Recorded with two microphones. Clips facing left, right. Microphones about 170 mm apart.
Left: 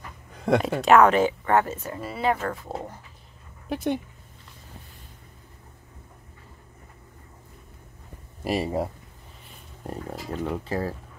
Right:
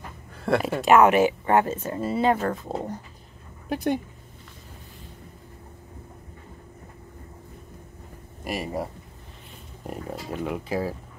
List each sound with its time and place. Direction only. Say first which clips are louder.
0.3 s speech: left 1 dB; 5° right (ahead or behind)
1.5 s speech: right 1 dB; 20° right (ahead or behind)
3.6 s speech: right 1 dB; centre (ahead or behind)
8.5 s speech: left 4 dB; 30° left (ahead or behind)
9.8 s speech: even; 10° right (ahead or behind)